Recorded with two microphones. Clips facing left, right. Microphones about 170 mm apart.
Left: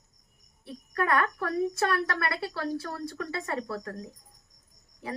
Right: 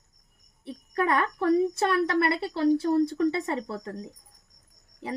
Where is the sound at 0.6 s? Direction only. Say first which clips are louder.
Right 3 dB; 20° right (ahead or behind).